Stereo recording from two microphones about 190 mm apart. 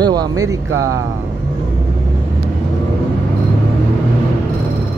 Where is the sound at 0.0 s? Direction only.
20° right (ahead or behind).